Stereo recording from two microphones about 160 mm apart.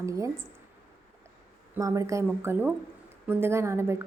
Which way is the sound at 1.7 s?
20° right (ahead or behind).